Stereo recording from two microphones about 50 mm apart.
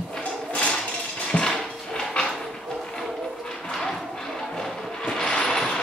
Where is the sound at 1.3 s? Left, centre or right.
Centre.